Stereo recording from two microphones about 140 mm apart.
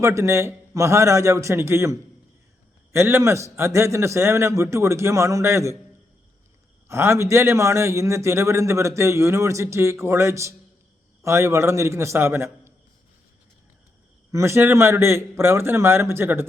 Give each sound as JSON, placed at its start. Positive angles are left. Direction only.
{"t": 0.0, "sound": "a man's voice", "side_deg": -20}
{"t": 6.8, "sound": "a man's voice", "side_deg": -20}
{"t": 14.3, "sound": "a man's voice", "side_deg": -20}